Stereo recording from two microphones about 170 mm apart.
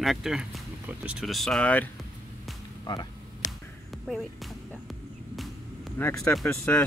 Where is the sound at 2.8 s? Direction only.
25° left (ahead or behind).